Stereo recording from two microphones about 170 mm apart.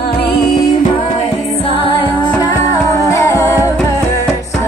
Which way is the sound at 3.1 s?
15° left (ahead or behind).